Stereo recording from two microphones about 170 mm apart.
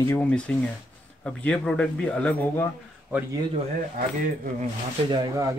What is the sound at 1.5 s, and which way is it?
Speech, 5° left (ahead or behind).